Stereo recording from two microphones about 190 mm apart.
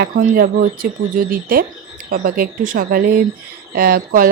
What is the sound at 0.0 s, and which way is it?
Speech, 50° right (ahead or behind).